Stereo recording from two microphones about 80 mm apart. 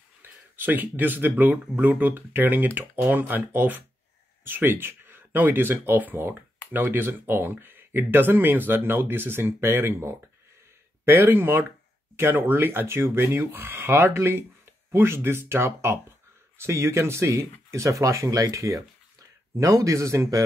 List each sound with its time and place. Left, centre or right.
0.2 s speech: right